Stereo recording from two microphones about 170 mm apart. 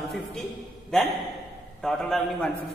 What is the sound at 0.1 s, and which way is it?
Speech, centre (ahead or behind).